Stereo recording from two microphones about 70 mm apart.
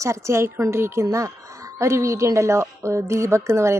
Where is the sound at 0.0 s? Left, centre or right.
Right.